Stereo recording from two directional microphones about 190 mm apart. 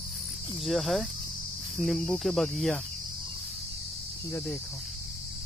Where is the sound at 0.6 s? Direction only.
Centre (ahead or behind).